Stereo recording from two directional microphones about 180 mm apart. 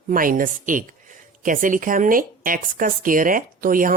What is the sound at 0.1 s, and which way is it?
Speech, 50° right (ahead or behind).